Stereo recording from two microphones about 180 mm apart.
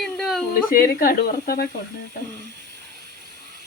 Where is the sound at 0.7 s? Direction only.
55° left (ahead or behind).